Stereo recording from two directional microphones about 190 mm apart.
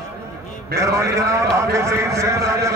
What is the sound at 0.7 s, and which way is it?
A man's voice, 15° right (ahead or behind).